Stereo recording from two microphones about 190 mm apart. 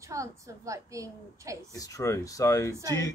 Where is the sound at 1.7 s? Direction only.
20° left (ahead or behind).